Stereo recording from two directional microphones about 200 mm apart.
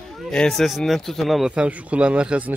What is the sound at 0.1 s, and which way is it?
Speech, centre (ahead or behind).